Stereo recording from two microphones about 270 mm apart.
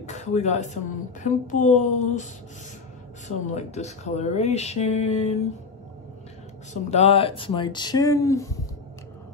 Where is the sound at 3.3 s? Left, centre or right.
Left.